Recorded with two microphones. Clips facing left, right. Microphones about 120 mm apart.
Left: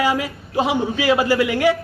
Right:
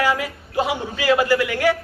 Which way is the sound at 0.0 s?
25° left (ahead or behind).